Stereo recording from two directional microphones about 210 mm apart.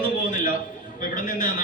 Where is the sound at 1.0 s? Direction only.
40° left (ahead or behind).